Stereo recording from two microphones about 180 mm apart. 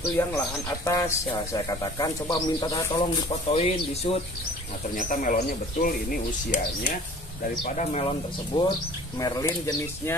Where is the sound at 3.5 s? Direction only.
35° left (ahead or behind).